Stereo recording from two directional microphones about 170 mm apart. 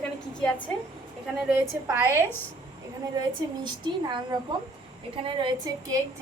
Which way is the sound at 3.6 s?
25° right (ahead or behind).